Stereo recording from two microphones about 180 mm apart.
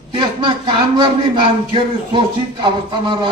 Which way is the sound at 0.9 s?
30° right (ahead or behind).